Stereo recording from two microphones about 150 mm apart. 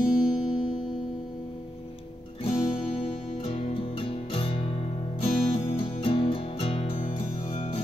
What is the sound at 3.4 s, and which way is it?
Music, 40° left (ahead or behind).